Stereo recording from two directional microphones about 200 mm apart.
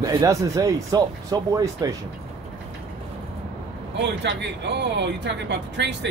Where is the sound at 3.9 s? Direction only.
60° right (ahead or behind).